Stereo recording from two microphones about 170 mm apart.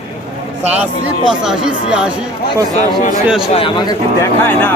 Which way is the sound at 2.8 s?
50° left (ahead or behind).